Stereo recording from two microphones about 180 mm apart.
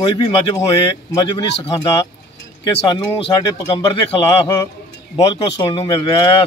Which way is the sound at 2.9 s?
25° left (ahead or behind).